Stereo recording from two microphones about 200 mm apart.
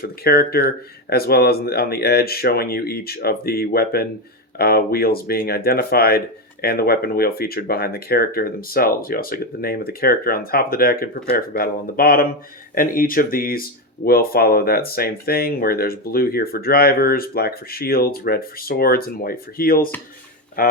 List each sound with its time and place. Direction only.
0.0 s speech: 50° left (ahead or behind)